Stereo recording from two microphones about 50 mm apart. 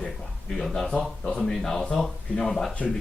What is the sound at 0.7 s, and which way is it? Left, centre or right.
Speech, centre.